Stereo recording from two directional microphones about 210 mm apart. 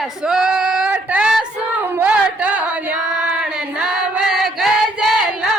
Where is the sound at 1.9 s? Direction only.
5° right (ahead or behind).